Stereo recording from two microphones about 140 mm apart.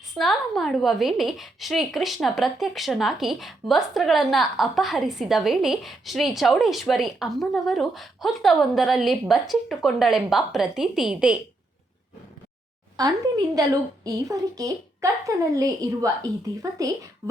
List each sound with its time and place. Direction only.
0.2 s a woman's voice: centre (ahead or behind)
13.0 s a woman's voice: 30° right (ahead or behind)